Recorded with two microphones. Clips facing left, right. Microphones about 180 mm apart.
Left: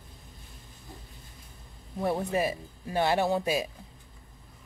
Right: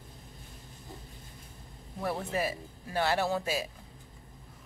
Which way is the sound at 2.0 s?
20° left (ahead or behind).